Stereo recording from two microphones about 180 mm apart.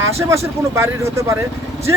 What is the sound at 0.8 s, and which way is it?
Speech, 15° right (ahead or behind).